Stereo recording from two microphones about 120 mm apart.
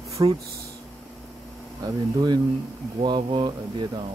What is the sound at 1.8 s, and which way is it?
Speech, 35° right (ahead or behind).